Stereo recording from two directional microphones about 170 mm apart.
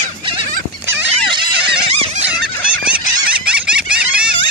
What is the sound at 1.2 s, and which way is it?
Music, 25° right (ahead or behind).